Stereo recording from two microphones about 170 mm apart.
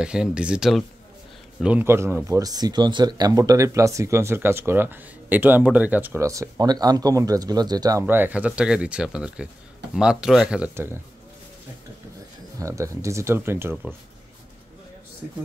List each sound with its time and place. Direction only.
0.0 s speech: 5° right (ahead or behind)
12.5 s speech: 20° right (ahead or behind)